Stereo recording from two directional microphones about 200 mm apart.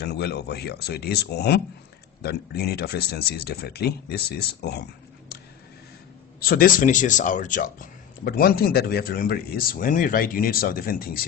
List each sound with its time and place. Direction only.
0.0 s speech: 55° left (ahead or behind)
5.3 s a sound: 50° left (ahead or behind)
6.4 s speech: 45° left (ahead or behind)